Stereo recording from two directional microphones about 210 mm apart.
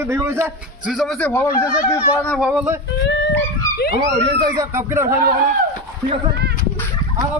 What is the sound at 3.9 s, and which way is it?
Speech, 20° right (ahead or behind).